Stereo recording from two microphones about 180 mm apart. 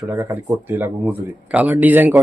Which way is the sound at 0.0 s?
15° right (ahead or behind).